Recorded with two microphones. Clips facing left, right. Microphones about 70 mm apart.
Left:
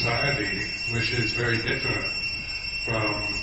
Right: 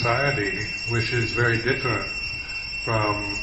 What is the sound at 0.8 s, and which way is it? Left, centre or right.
Speech, right.